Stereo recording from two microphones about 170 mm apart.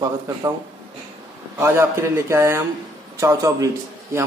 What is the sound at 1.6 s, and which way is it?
A man's voice, 15° right (ahead or behind).